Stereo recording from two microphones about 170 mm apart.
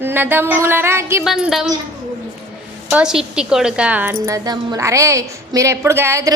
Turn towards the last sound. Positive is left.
turn(degrees=-20)  # may be behind; listen again after turning